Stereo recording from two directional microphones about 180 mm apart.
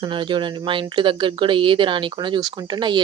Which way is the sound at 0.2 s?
25° right (ahead or behind).